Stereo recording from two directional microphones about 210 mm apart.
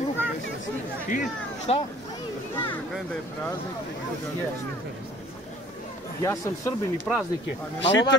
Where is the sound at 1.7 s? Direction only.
30° left (ahead or behind).